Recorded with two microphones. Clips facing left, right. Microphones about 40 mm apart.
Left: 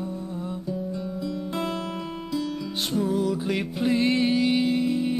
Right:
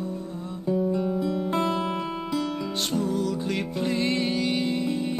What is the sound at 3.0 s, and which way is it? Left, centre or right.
Music, centre.